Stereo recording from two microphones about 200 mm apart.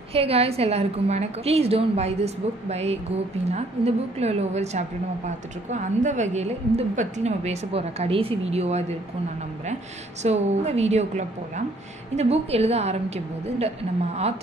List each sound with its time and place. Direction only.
0.1 s a woman's voice: 30° right (ahead or behind)
10.2 s a woman's voice: 35° right (ahead or behind)